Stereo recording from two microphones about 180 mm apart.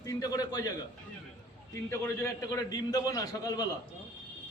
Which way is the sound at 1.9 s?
15° left (ahead or behind).